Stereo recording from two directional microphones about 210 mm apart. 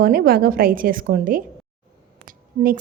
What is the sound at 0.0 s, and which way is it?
A woman's voice, 45° right (ahead or behind).